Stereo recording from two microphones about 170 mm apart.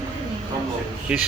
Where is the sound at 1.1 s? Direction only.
5° right (ahead or behind).